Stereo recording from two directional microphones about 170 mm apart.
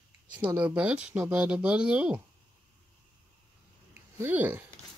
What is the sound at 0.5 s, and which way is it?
Speech, 5° right (ahead or behind).